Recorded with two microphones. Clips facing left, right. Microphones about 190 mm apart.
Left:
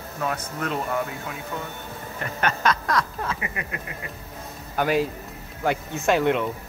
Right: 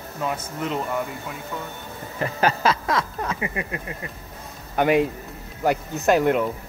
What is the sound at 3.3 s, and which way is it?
Speech, 25° right (ahead or behind).